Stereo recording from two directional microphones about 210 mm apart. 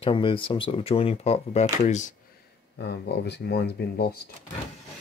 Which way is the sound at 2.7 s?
50° left (ahead or behind).